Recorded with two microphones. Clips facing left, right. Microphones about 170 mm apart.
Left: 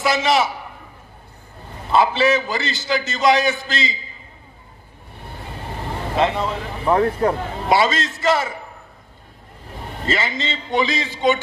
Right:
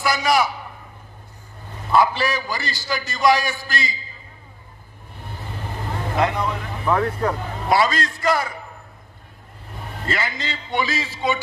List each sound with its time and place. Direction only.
0.0 s a man's voice: 25° left (ahead or behind)
1.9 s a man's voice: 25° left (ahead or behind)
6.1 s a man's voice: 25° left (ahead or behind)
10.0 s a man's voice: 25° left (ahead or behind)